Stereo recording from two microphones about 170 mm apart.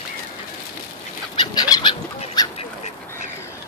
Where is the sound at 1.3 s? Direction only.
25° left (ahead or behind).